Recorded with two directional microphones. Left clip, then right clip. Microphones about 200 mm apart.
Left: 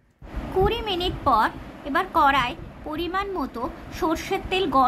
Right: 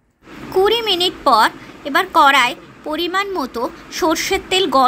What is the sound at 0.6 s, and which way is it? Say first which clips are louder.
A woman's voice: right 9 dB; 15° right (ahead or behind).